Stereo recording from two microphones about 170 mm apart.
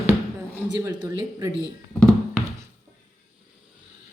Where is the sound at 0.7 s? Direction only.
25° right (ahead or behind).